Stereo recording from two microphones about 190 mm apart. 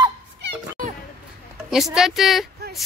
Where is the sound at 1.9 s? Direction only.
Centre (ahead or behind).